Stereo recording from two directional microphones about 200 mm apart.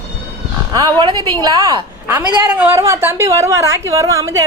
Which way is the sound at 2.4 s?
10° right (ahead or behind).